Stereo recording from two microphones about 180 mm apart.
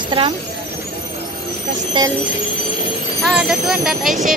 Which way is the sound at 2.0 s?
25° right (ahead or behind).